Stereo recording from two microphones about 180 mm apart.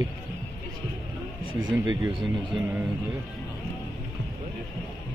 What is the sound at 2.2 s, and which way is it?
Speech, 10° right (ahead or behind).